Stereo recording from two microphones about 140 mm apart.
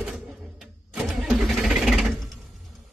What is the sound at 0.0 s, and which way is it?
Engine starting, centre (ahead or behind).